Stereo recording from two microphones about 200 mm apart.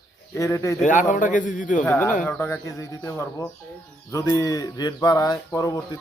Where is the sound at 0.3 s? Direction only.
15° left (ahead or behind).